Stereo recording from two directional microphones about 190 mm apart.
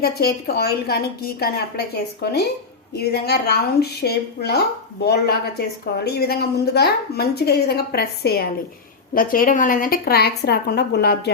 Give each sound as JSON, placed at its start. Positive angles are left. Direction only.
{"t": 0.0, "sound": "a woman's voice", "side_deg": 55}